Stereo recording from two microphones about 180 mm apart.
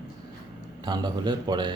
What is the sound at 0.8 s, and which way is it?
Speech, 25° right (ahead or behind).